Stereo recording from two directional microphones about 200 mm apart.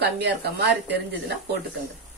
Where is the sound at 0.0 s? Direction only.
55° right (ahead or behind).